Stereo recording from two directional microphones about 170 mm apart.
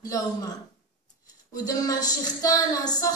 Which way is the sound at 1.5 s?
20° left (ahead or behind).